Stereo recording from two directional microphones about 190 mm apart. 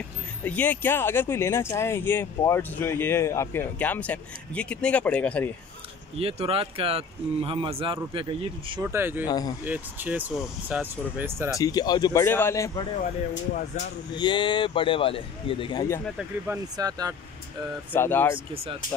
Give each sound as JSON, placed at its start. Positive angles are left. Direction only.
{"t": 0.4, "sound": "speech", "side_deg": 10}
{"t": 6.1, "sound": "speech", "side_deg": -30}
{"t": 8.9, "sound": "speech", "side_deg": -10}
{"t": 9.2, "sound": "speech", "side_deg": 20}
{"t": 9.7, "sound": "speech", "side_deg": -10}
{"t": 11.5, "sound": "speech", "side_deg": 20}
{"t": 14.1, "sound": "speech", "side_deg": 25}
{"t": 16.7, "sound": "speech", "side_deg": -20}
{"t": 17.9, "sound": "speech", "side_deg": 10}
{"t": 18.5, "sound": "speech", "side_deg": -30}